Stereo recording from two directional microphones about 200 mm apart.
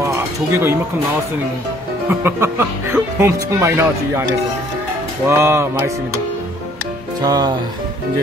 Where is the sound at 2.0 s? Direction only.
10° right (ahead or behind).